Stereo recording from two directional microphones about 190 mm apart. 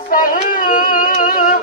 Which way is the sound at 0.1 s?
50° left (ahead or behind).